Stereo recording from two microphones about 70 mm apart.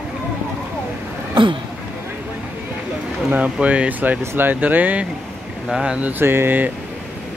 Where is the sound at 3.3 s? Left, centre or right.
Centre.